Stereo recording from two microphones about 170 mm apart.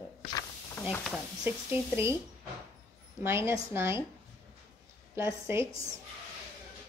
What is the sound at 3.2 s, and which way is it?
Speech, 15° right (ahead or behind).